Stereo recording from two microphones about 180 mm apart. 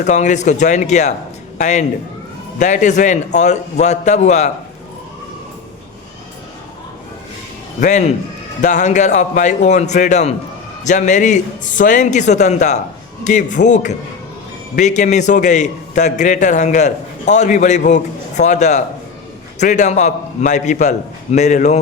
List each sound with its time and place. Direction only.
0.0 s a man's voice: 40° left (ahead or behind)
7.8 s a man's voice: 40° left (ahead or behind)